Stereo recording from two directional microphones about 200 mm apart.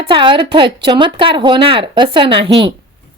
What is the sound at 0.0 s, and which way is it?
Speech, 25° right (ahead or behind).